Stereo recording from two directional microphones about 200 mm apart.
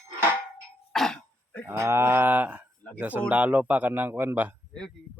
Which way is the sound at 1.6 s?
15° right (ahead or behind).